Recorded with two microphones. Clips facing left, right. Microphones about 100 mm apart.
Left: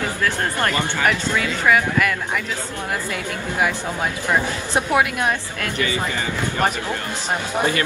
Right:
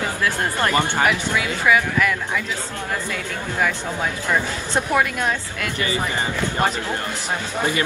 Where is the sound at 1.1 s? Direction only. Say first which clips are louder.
Even; 15° right (ahead or behind).